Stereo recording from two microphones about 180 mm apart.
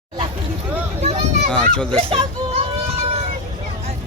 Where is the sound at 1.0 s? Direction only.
35° right (ahead or behind).